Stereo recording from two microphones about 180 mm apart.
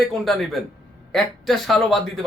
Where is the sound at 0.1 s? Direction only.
Centre (ahead or behind).